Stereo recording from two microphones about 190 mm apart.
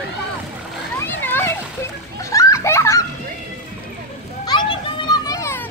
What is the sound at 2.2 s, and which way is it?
Children playing, 15° left (ahead or behind).